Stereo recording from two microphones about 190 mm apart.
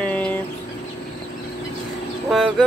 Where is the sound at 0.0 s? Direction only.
5° left (ahead or behind).